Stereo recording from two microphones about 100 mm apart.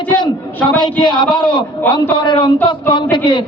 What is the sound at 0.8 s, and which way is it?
A man's voice, 50° left (ahead or behind).